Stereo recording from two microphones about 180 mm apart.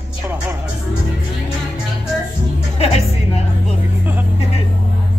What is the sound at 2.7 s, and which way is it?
Music, 35° left (ahead or behind).